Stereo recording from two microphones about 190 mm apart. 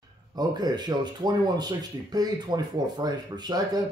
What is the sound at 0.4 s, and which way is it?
Speech, 20° right (ahead or behind).